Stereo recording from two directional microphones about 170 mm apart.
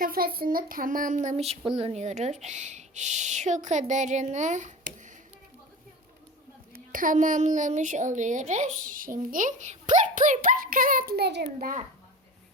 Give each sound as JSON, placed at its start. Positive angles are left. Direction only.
{"t": 0.0, "sound": "a child's voice", "side_deg": -60}
{"t": 6.7, "sound": "a child's voice", "side_deg": -55}